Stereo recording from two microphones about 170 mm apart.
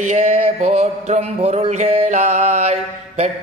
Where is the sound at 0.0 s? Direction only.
40° right (ahead or behind).